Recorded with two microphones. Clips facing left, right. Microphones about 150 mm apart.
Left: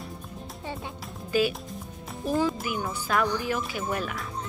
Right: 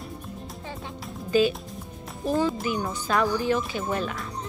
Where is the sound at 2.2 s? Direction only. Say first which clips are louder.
Right 2 dB; 5° left (ahead or behind).